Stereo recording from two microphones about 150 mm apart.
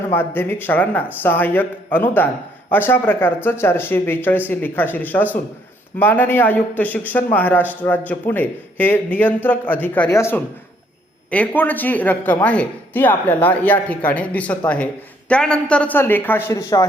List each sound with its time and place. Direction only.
0.1 s speech: 15° left (ahead or behind)